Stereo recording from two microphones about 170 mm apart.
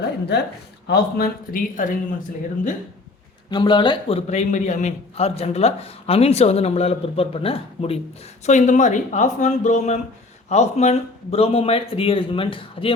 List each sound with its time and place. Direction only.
0.0 s a woman's voice: 75° left (ahead or behind); by 2.0 s 50° left (ahead or behind)
3.5 s speech: 25° left (ahead or behind)
4.3 s a man's voice: 45° left (ahead or behind)
8.4 s a man's voice: 45° left (ahead or behind)